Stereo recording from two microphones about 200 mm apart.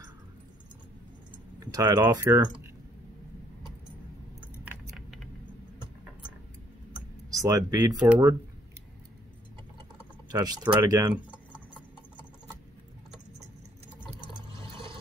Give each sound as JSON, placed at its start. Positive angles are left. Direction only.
{"t": 1.6, "sound": "speech", "side_deg": -15}
{"t": 4.6, "sound": "keys jangling", "side_deg": 0}
{"t": 7.2, "sound": "speech", "side_deg": -15}
{"t": 10.3, "sound": "speech", "side_deg": -20}